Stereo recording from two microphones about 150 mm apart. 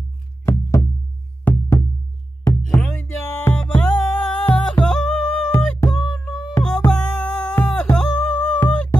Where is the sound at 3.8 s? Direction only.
5° left (ahead or behind).